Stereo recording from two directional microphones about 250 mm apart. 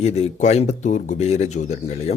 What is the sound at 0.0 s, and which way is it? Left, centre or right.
Speech, left.